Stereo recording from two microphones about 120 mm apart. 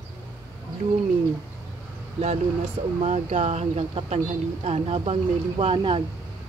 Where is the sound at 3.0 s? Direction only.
75° right (ahead or behind); by 6.0 s 50° right (ahead or behind).